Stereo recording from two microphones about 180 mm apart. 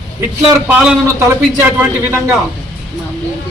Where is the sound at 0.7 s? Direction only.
10° right (ahead or behind).